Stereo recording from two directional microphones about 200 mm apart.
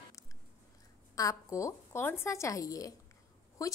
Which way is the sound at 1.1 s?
15° left (ahead or behind).